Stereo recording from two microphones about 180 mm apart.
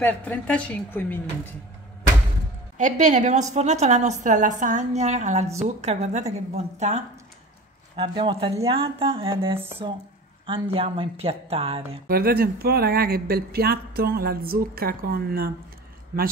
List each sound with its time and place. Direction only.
0.0 s a woman's voice: 10° left (ahead or behind)
2.8 s a woman's voice: 40° right (ahead or behind)
7.9 s a sound: 25° right (ahead or behind)
9.7 s a woman's voice: 30° right (ahead or behind)
12.1 s speech: 55° right (ahead or behind)